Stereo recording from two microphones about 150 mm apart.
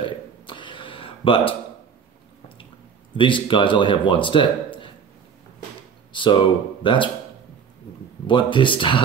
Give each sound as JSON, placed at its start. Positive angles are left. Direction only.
{"t": 0.0, "sound": "a sound", "side_deg": 30}
{"t": 3.2, "sound": "speech", "side_deg": 35}
{"t": 6.1, "sound": "speech", "side_deg": 35}
{"t": 8.3, "sound": "speech", "side_deg": 35}